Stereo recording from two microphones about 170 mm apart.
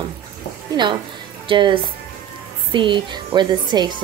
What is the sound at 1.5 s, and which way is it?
Speech, 30° right (ahead or behind).